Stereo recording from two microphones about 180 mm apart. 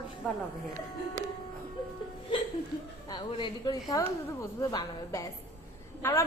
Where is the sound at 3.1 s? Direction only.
25° left (ahead or behind).